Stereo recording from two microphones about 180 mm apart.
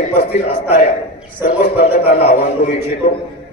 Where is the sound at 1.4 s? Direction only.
55° left (ahead or behind).